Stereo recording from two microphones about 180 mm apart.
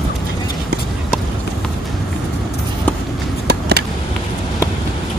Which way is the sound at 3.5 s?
65° right (ahead or behind).